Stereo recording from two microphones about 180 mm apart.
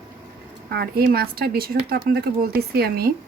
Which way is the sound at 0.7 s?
60° right (ahead or behind).